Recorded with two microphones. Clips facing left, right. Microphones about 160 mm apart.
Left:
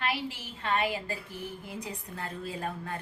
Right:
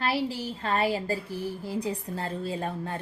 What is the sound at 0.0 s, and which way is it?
A woman's voice, 35° right (ahead or behind).